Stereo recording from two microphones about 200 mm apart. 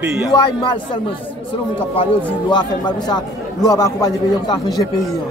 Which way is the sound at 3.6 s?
20° left (ahead or behind).